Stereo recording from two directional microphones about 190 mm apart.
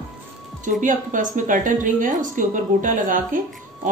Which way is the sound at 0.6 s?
45° right (ahead or behind).